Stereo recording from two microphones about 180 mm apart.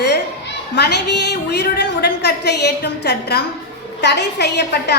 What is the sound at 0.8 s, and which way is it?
A woman's voice, 70° left (ahead or behind).